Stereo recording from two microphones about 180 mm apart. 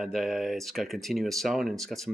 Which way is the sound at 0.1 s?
Centre (ahead or behind).